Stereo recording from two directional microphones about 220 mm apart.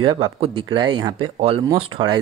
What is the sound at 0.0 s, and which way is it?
Speech, 20° right (ahead or behind).